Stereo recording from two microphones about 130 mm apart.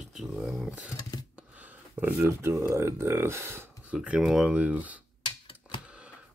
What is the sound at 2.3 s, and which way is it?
Speech, 20° right (ahead or behind).